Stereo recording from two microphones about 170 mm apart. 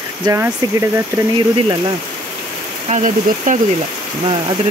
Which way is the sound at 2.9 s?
50° right (ahead or behind).